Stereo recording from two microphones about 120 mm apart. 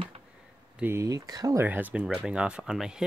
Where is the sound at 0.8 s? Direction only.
25° right (ahead or behind).